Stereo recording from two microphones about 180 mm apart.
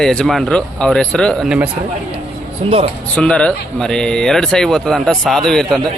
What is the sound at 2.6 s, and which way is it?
Speech, 35° right (ahead or behind).